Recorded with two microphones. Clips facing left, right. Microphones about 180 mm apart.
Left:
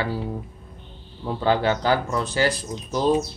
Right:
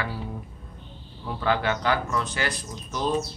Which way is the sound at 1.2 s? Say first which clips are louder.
Left 4 dB; 30° left (ahead or behind).